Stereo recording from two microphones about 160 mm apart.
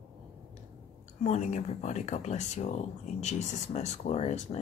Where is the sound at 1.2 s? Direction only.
45° left (ahead or behind).